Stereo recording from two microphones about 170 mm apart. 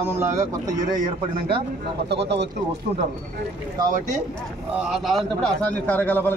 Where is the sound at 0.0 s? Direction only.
15° right (ahead or behind).